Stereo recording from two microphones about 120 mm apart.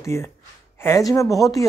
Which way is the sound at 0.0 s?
25° left (ahead or behind).